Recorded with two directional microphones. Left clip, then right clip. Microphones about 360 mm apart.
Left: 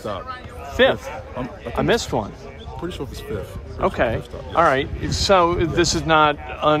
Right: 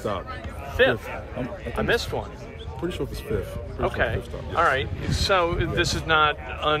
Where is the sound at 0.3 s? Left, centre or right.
Centre.